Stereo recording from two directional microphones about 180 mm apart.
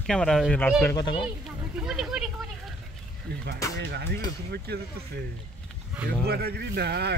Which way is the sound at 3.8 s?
65° right (ahead or behind).